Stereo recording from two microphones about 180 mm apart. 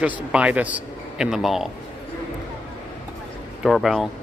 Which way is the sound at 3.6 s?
Centre (ahead or behind).